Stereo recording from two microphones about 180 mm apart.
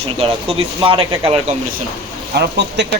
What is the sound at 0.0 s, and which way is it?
Speech, 30° right (ahead or behind).